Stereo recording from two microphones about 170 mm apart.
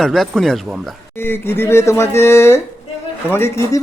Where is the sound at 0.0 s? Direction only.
Centre (ahead or behind).